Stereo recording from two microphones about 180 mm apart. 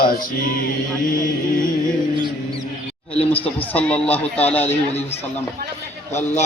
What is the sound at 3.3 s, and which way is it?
Speech, 30° left (ahead or behind).